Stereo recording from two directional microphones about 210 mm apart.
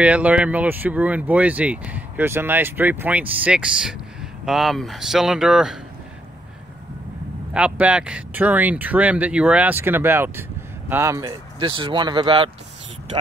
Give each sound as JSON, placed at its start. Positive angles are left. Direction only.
{"t": 0.0, "sound": "speech", "side_deg": -5}
{"t": 7.5, "sound": "speech", "side_deg": -5}